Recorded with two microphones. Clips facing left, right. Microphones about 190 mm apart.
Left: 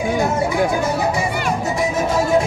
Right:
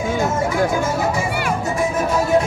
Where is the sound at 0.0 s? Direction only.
15° left (ahead or behind).